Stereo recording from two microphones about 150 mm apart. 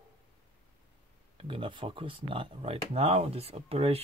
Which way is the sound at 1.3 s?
35° right (ahead or behind).